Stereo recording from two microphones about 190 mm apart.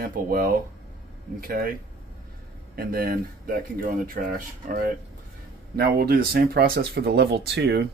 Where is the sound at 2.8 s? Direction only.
50° right (ahead or behind).